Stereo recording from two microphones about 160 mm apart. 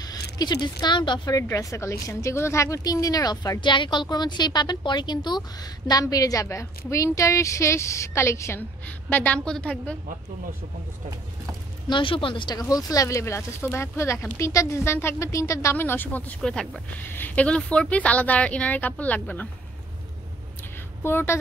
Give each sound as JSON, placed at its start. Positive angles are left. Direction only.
{"t": 0.4, "sound": "a woman's voice", "side_deg": 25}
{"t": 11.9, "sound": "speech", "side_deg": 30}
{"t": 21.0, "sound": "speech", "side_deg": 15}